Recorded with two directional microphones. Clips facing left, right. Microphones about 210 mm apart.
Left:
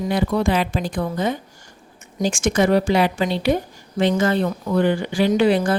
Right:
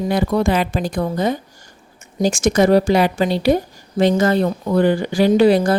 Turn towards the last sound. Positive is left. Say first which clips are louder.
# right 4 dB
turn(degrees=-40)  # may be behind; listen again after turning